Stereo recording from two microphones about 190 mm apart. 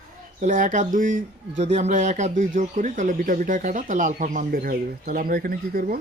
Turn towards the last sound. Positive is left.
turn(degrees=-50)  # may be behind; listen again after turning